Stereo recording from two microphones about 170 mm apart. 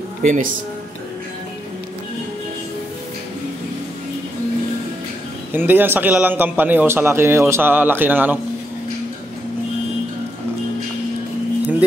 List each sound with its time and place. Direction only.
0.2 s speech: 45° right (ahead or behind)
5.5 s a man's voice: 10° right (ahead or behind)